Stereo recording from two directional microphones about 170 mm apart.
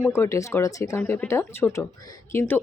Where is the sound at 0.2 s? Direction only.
15° left (ahead or behind).